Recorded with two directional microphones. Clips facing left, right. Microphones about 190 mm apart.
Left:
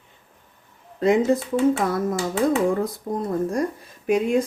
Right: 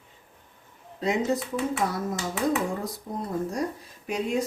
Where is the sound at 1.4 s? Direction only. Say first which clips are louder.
Left 7 dB; 30° left (ahead or behind).